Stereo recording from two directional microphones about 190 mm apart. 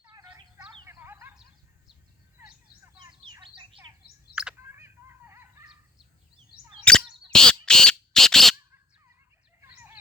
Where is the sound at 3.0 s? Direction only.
25° right (ahead or behind).